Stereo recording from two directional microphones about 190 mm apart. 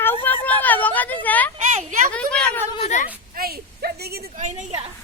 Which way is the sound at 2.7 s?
35° left (ahead or behind).